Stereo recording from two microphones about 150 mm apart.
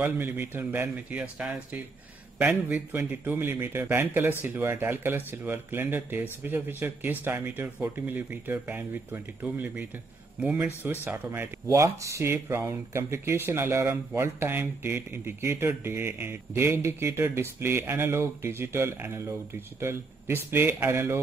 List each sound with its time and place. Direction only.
0.0 s speech: 15° right (ahead or behind)